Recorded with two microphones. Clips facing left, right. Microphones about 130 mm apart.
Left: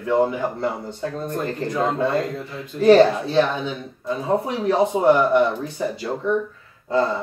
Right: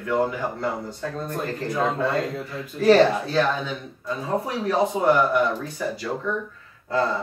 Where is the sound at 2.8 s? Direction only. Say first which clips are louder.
Left 3 dB; 25° left (ahead or behind).